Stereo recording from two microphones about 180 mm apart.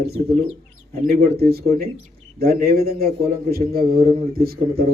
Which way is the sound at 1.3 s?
60° right (ahead or behind).